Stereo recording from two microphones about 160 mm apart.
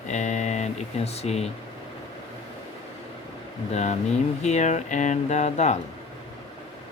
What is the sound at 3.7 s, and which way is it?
Speech, 45° left (ahead or behind).